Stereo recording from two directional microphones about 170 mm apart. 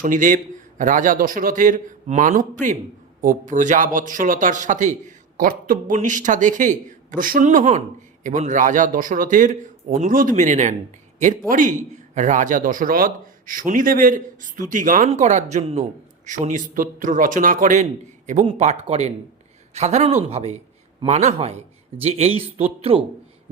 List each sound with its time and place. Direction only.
0.0 s speech: 50° right (ahead or behind); by 23.0 s 35° right (ahead or behind)